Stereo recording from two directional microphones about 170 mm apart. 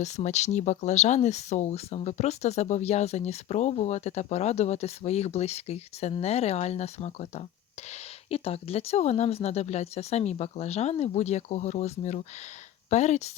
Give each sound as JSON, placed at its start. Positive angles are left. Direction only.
{"t": 0.0, "sound": "speech", "side_deg": 40}